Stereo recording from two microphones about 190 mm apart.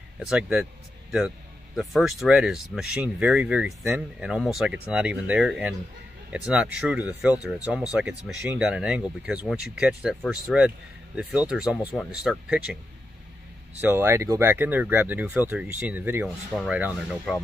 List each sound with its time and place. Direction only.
0.3 s speech: 5° right (ahead or behind)
1.8 s speech: centre (ahead or behind)
13.7 s speech: 10° right (ahead or behind)